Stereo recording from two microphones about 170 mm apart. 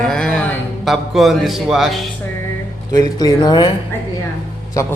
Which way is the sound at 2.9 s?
25° left (ahead or behind).